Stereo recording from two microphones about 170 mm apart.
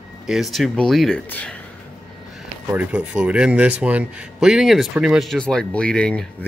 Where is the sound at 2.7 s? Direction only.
10° right (ahead or behind).